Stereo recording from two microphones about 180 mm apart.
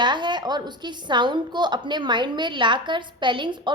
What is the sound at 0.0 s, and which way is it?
A woman's voice, 25° right (ahead or behind).